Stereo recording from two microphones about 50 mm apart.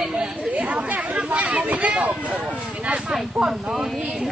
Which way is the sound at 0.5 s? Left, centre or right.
Right.